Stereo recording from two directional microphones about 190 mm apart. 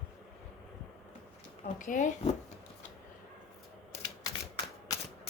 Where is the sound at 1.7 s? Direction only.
45° left (ahead or behind).